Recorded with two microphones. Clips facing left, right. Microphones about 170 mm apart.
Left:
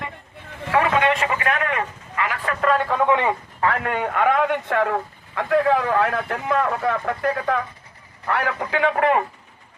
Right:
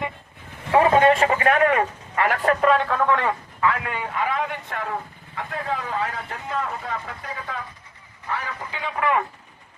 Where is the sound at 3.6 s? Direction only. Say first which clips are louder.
Left 2 dB; 45° left (ahead or behind); by 9.0 s 75° left (ahead or behind).